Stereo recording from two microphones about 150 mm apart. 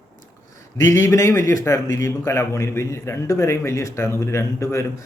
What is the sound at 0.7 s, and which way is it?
A man's voice, 15° left (ahead or behind).